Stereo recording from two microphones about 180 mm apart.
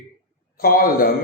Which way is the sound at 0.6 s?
55° left (ahead or behind).